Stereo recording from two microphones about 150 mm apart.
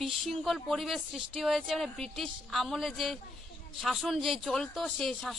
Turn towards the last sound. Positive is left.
turn(degrees=0)  # may be behind; listen again after turning